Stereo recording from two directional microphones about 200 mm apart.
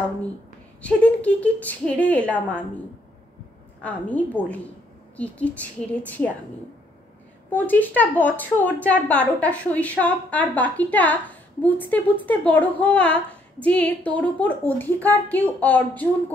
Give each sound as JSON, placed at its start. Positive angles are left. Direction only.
{"t": 0.8, "sound": "a woman's voice", "side_deg": 5}
{"t": 3.8, "sound": "a woman's voice", "side_deg": 5}
{"t": 7.5, "sound": "a woman's voice", "side_deg": 10}